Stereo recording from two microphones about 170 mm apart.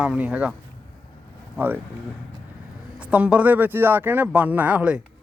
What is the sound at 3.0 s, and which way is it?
Speech, 5° right (ahead or behind).